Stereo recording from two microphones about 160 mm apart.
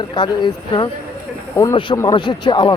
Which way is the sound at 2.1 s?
30° left (ahead or behind).